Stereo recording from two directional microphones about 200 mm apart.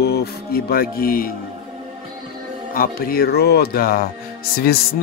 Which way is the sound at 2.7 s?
45° left (ahead or behind).